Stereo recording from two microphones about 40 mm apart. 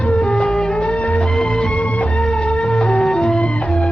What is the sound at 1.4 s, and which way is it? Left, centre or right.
Music, left.